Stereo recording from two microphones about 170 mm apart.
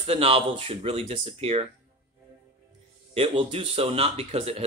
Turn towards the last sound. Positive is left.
turn(degrees=-35)  # may be behind; listen again after turning